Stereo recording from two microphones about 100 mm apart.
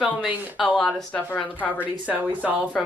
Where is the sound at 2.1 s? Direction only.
15° right (ahead or behind).